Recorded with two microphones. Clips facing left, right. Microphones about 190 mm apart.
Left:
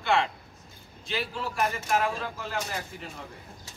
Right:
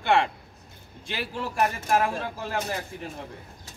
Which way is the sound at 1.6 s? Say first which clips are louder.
Right 3 dB; 55° right (ahead or behind).